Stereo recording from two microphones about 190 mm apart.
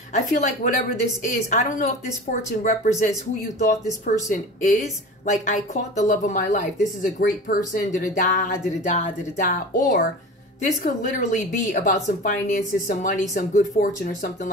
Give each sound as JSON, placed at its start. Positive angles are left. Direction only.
{"t": 0.1, "sound": "a woman's voice", "side_deg": 45}
{"t": 4.3, "sound": "a woman's voice", "side_deg": 40}